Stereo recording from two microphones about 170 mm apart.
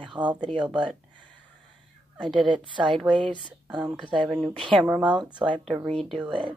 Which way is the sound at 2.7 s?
30° right (ahead or behind).